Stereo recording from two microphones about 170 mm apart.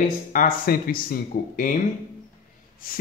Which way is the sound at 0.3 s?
55° left (ahead or behind).